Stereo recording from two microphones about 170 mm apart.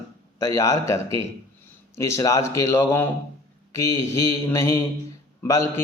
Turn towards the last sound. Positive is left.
turn(degrees=15)  # may be behind; listen again after turning